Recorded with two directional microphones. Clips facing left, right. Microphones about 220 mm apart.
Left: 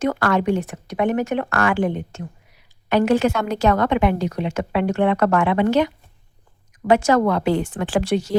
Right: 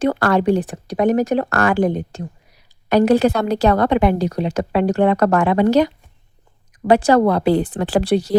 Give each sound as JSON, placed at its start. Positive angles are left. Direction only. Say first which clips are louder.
{"t": 0.0, "sound": "a woman's voice", "louder": "right 3 dB", "side_deg": -35}